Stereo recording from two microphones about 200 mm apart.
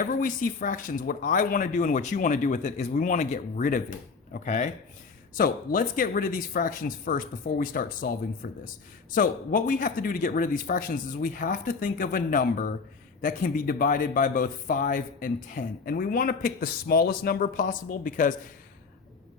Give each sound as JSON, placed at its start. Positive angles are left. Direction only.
{"t": 0.0, "sound": "speech", "side_deg": 40}